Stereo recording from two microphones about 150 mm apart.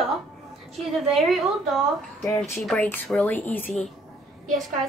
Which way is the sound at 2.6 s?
Centre (ahead or behind).